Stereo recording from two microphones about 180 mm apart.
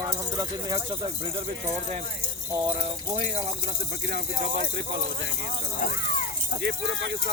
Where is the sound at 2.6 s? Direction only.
35° right (ahead or behind).